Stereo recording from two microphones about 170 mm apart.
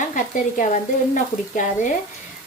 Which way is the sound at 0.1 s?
50° left (ahead or behind).